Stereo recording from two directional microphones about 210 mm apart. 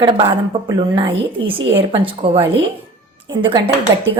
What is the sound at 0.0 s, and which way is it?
A woman's voice, 25° right (ahead or behind).